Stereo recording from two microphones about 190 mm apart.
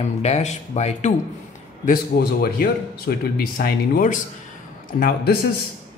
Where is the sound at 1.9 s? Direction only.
55° left (ahead or behind).